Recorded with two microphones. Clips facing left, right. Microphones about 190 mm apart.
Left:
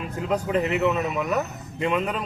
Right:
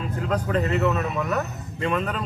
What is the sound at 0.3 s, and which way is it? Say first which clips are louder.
Speech: left 1 dB; 15° left (ahead or behind).